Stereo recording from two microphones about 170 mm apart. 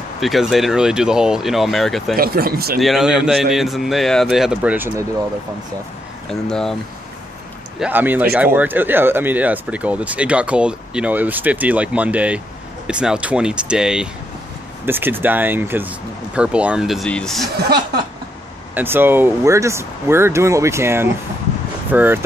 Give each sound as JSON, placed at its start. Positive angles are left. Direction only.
{"t": 0.2, "sound": "a man's voice", "side_deg": 0}
{"t": 2.1, "sound": "speech", "side_deg": -60}
{"t": 2.8, "sound": "a man's voice", "side_deg": 0}
{"t": 6.5, "sound": "a man's voice", "side_deg": 5}
{"t": 7.8, "sound": "a man's voice", "side_deg": -10}
{"t": 17.6, "sound": "speech", "side_deg": -70}
{"t": 18.8, "sound": "speech", "side_deg": -10}